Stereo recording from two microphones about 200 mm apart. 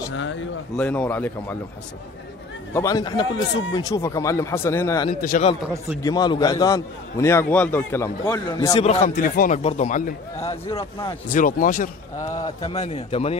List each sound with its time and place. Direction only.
0.1 s speech: 70° left (ahead or behind)
0.7 s a man's voice: 10° left (ahead or behind)
2.7 s a man's voice: 15° left (ahead or behind)
5.2 s a man's voice: 40° left (ahead or behind)
6.0 s a man's voice: 20° left (ahead or behind)
8.8 s a man's voice: 45° left (ahead or behind)
11.3 s a man's voice: 40° left (ahead or behind)
12.4 s a man's voice: 25° left (ahead or behind)